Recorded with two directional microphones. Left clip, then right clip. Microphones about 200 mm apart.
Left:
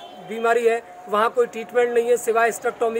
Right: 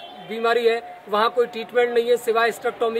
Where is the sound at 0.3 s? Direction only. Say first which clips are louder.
Left 1 dB; 5° left (ahead or behind).